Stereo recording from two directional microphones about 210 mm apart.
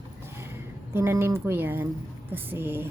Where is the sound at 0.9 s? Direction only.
10° right (ahead or behind).